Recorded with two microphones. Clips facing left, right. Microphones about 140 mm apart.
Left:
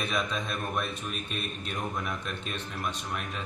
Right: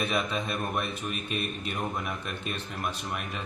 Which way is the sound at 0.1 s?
5° right (ahead or behind).